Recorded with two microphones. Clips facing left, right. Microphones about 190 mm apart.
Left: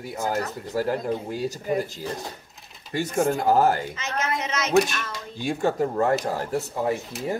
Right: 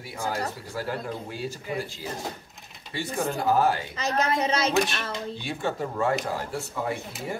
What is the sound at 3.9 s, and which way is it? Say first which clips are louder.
Speech: right 3 dB; 35° right (ahead or behind).